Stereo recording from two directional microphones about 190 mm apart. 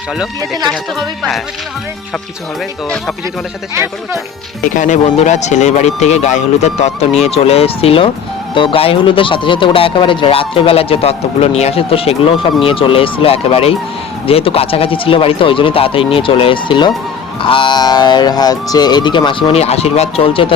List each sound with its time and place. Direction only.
0.7 s speech: centre (ahead or behind)
4.6 s speech: 40° left (ahead or behind)